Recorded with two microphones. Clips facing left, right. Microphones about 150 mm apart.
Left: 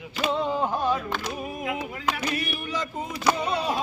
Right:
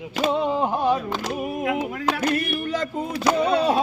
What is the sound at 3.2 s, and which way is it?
Speech, 70° right (ahead or behind).